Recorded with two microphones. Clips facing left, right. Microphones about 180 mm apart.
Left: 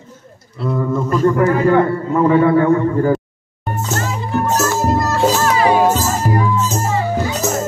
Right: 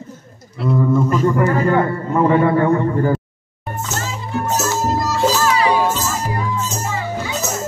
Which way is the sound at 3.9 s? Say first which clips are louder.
Left 5 dB; 55° left (ahead or behind).